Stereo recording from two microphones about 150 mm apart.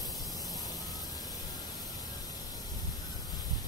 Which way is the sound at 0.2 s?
25° left (ahead or behind).